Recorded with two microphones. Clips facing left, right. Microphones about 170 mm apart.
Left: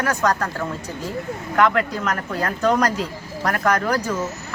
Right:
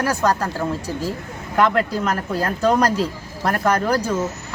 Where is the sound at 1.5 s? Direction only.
30° right (ahead or behind).